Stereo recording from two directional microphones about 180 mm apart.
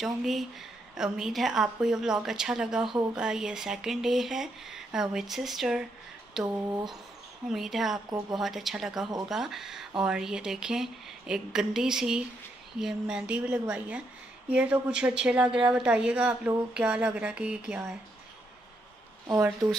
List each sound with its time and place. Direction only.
0.0 s a woman's voice: centre (ahead or behind)
19.6 s speech: 20° right (ahead or behind)